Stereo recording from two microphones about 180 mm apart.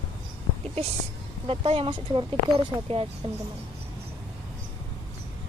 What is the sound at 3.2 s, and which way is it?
Speech, 30° right (ahead or behind).